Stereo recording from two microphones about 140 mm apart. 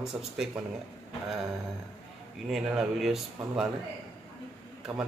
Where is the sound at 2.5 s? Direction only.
5° right (ahead or behind).